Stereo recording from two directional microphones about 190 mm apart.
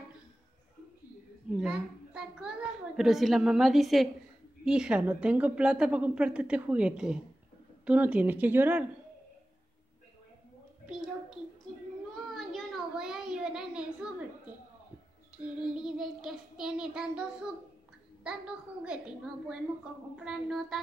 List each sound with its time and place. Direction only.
1.6 s a child's voice: 5° right (ahead or behind)
12.4 s a sound: centre (ahead or behind)
15.3 s a child's voice: 5° right (ahead or behind)